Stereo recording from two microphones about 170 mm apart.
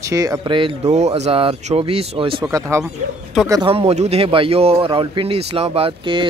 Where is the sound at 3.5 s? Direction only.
30° right (ahead or behind).